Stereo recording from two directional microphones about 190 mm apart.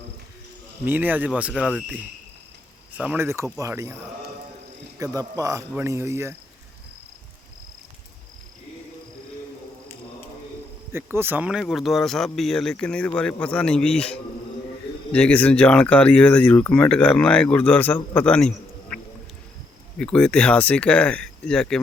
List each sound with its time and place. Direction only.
0.9 s speech: 10° right (ahead or behind)
3.0 s speech: 10° right (ahead or behind)
4.9 s speech: 20° right (ahead or behind)
10.9 s speech: 10° right (ahead or behind); by 18.9 s 5° left (ahead or behind)
20.0 s speech: 5° left (ahead or behind)